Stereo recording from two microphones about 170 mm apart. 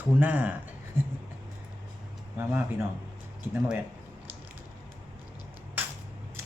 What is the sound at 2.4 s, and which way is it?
Speech, 15° right (ahead or behind).